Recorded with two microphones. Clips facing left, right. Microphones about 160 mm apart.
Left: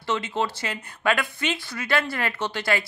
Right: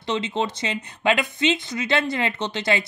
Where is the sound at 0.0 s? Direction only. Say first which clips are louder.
Right 1 dB; 20° right (ahead or behind).